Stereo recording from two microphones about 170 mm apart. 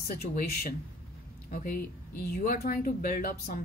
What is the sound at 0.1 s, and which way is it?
Speech, 60° left (ahead or behind).